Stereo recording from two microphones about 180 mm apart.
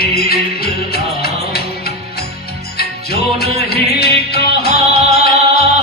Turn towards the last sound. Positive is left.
turn(degrees=60)  # may be behind; listen again after turning